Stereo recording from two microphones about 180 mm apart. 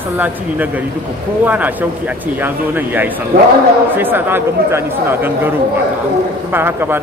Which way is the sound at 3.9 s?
10° right (ahead or behind).